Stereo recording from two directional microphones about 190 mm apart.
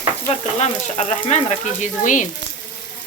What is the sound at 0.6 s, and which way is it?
Speech, 35° left (ahead or behind).